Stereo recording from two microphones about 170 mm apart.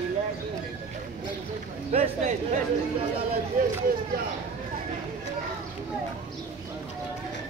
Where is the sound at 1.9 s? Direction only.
40° right (ahead or behind).